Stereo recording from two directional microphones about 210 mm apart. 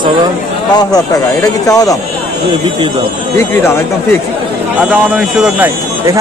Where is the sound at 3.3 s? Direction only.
10° left (ahead or behind).